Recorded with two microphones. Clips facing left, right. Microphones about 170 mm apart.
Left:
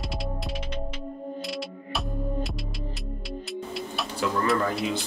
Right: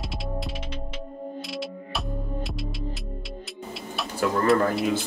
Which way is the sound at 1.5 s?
Centre (ahead or behind).